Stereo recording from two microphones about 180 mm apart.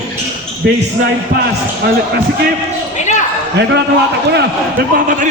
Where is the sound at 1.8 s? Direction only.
70° right (ahead or behind).